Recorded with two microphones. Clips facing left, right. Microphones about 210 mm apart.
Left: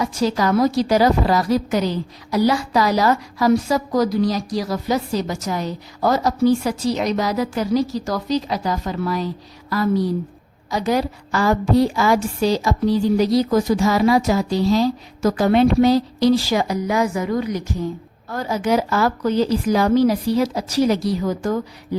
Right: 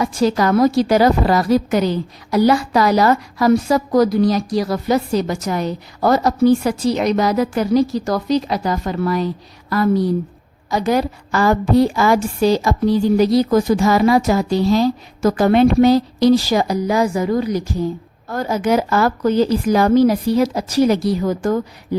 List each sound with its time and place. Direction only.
0.0 s a woman's voice: 55° right (ahead or behind); by 17.7 s 35° right (ahead or behind)
18.3 s a woman's voice: 50° right (ahead or behind)